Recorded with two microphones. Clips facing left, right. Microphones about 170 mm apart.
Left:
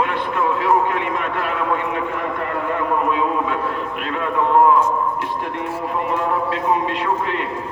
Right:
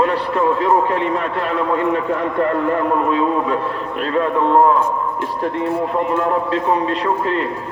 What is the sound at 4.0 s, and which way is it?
Speech, 35° right (ahead or behind).